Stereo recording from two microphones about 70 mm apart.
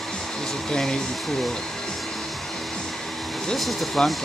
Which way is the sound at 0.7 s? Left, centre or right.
Centre.